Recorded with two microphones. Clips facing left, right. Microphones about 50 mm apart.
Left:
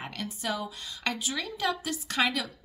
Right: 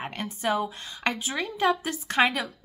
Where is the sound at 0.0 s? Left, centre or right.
Right.